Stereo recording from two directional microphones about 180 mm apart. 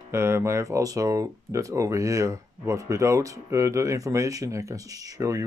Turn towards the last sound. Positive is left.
turn(degrees=-15)  # may be behind; listen again after turning